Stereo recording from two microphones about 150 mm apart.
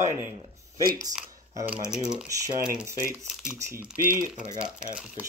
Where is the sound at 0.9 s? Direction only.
25° right (ahead or behind).